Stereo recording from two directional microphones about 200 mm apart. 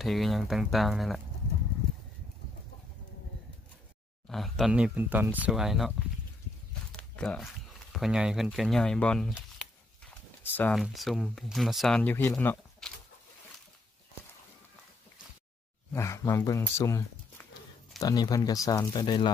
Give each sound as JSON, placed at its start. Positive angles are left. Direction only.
{"t": 0.0, "sound": "speech", "side_deg": 0}
{"t": 4.3, "sound": "speech", "side_deg": 0}
{"t": 6.9, "sound": "walk", "side_deg": 5}
{"t": 7.9, "sound": "speech", "side_deg": 0}
{"t": 10.5, "sound": "speech", "side_deg": 10}
{"t": 15.9, "sound": "speech", "side_deg": 15}